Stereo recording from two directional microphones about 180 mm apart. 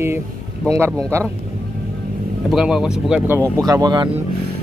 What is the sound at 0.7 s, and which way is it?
Speech, 15° right (ahead or behind).